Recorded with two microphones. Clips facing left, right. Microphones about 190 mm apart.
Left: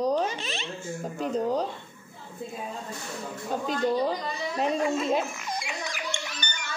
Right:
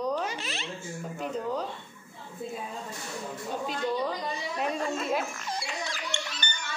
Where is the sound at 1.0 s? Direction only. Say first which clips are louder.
Left 6 dB; 40° left (ahead or behind).